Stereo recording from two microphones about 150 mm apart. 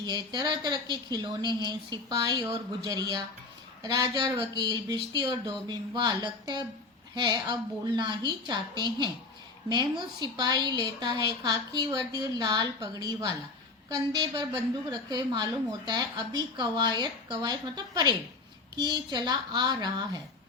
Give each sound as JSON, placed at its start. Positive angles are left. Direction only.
{"t": 0.0, "sound": "a woman's voice", "side_deg": -30}